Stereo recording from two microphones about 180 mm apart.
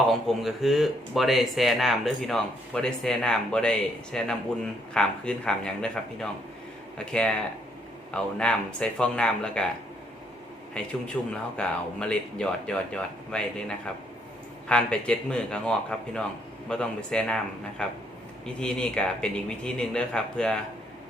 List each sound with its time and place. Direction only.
0.1 s speech: centre (ahead or behind)
10.8 s speech: 5° left (ahead or behind)